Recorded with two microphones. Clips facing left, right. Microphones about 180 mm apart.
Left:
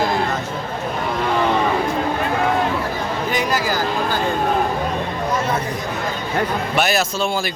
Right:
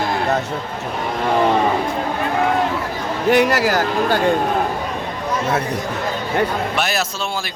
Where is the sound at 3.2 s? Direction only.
70° right (ahead or behind).